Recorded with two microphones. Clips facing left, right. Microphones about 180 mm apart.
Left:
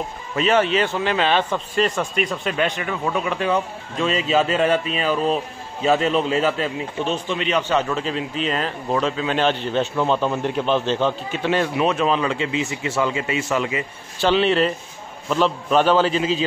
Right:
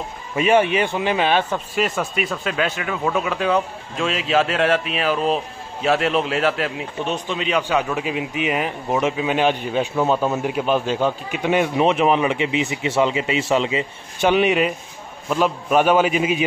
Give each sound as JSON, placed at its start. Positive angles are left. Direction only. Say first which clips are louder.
{"t": 0.4, "sound": "a man's voice", "louder": "right 1 dB", "side_deg": -15}